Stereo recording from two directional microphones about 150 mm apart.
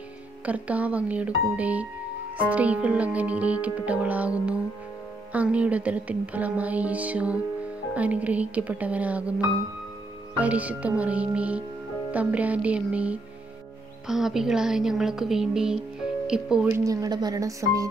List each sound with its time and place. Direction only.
0.5 s a woman's voice: 10° right (ahead or behind)
16.6 s speech: 20° right (ahead or behind)